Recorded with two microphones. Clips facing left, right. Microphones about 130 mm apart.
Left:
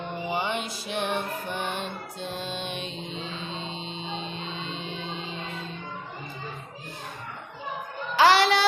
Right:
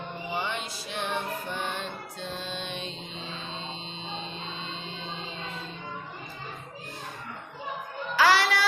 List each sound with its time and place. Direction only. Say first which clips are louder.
0.3 s music: left 3 dB; 15° left (ahead or behind)
8.1 s music: left 4 dB; 25° left (ahead or behind)